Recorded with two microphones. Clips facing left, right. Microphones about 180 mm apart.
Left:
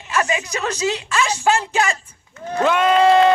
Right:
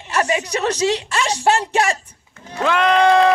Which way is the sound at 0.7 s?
75° right (ahead or behind).